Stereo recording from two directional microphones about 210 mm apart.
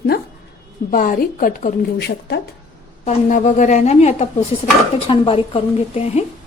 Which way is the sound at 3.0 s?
40° left (ahead or behind).